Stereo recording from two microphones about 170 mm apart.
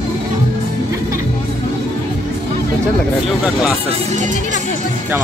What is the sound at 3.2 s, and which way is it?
Speech, 5° right (ahead or behind).